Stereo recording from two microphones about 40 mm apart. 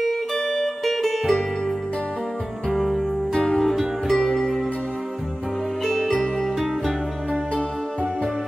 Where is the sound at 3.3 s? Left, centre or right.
Centre.